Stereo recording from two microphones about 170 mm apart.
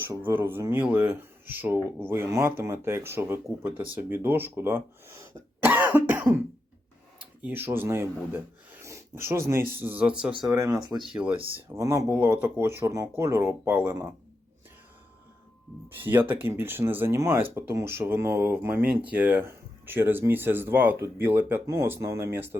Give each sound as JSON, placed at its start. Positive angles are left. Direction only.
{"t": 0.0, "sound": "speech", "side_deg": -15}
{"t": 8.8, "sound": "a sound", "side_deg": -15}
{"t": 9.7, "sound": "speech", "side_deg": -10}
{"t": 10.5, "sound": "speech", "side_deg": -20}
{"t": 16.0, "sound": "speech", "side_deg": -10}